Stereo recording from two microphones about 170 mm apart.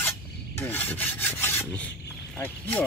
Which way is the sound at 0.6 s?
10° left (ahead or behind).